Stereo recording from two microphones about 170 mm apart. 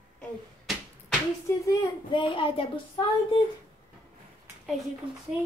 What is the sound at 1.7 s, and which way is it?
A child's voice, 30° left (ahead or behind).